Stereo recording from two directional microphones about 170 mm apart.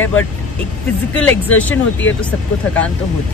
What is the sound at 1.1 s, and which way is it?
Speech, 10° left (ahead or behind).